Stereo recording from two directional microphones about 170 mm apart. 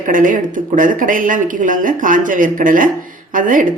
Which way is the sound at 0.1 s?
50° right (ahead or behind).